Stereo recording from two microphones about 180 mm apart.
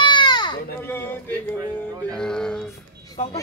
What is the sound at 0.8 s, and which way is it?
Speech, 10° left (ahead or behind).